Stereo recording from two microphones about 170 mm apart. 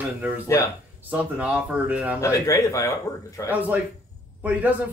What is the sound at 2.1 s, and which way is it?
Speech, 20° left (ahead or behind).